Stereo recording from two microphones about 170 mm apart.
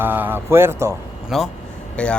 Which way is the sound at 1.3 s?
Centre (ahead or behind).